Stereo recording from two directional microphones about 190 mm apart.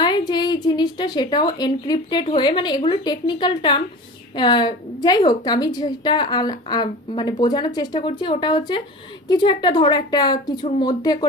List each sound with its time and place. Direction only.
0.0 s a woman's voice: 20° left (ahead or behind)